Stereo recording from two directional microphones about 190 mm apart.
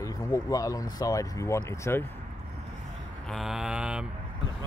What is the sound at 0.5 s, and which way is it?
Speech, 20° left (ahead or behind).